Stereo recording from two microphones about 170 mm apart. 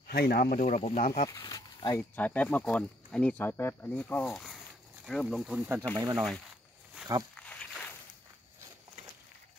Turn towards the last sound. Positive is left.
turn(degrees=10)  # may be behind; listen again after turning